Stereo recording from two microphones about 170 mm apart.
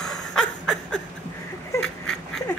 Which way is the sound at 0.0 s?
5° left (ahead or behind).